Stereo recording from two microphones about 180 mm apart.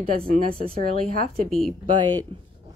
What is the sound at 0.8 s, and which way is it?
Speech, 50° right (ahead or behind).